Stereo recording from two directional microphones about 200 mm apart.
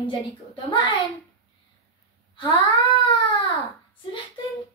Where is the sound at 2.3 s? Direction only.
25° left (ahead or behind).